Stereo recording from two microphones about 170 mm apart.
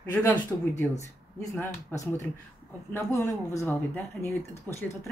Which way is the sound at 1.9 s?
20° left (ahead or behind).